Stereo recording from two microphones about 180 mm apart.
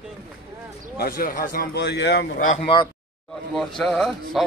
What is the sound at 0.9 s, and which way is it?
Speech, 55° left (ahead or behind).